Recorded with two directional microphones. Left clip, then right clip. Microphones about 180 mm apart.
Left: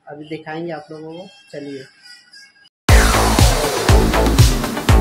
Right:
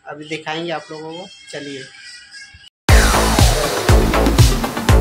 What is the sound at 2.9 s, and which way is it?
Music, centre (ahead or behind).